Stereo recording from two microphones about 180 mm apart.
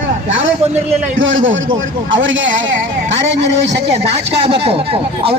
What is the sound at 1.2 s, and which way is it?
Speech, 90° right.